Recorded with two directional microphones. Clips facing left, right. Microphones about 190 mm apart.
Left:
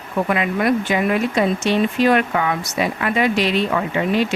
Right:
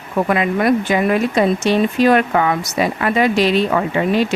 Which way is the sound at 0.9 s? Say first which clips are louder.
Right 3 dB; 40° right (ahead or behind).